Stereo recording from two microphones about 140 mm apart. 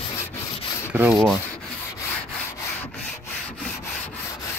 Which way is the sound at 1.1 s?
Centre (ahead or behind).